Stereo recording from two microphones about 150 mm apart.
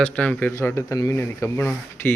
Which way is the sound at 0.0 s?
10° left (ahead or behind).